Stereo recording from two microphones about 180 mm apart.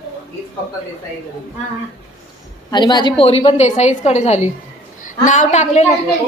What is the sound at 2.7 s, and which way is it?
A woman's voice, 25° left (ahead or behind).